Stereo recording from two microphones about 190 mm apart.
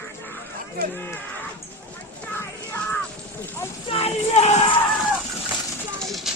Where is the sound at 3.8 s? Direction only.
30° left (ahead or behind).